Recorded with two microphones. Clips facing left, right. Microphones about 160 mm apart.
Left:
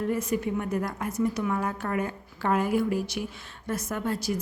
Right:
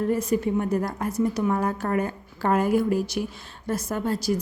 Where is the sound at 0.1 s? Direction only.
35° right (ahead or behind).